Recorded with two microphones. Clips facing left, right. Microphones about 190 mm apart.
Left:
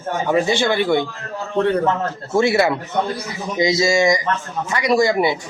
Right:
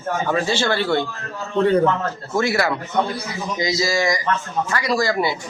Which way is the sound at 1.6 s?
Centre (ahead or behind).